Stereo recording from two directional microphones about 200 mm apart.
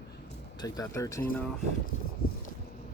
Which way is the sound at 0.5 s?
20° left (ahead or behind).